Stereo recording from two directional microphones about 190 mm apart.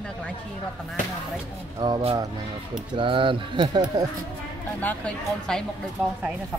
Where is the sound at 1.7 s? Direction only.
20° right (ahead or behind).